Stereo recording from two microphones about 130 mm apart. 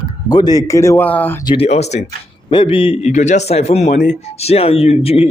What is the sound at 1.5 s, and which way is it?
Speech, 55° left (ahead or behind).